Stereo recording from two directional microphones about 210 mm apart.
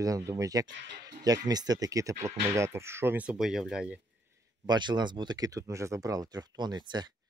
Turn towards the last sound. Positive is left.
turn(degrees=-20)  # may be behind; listen again after turning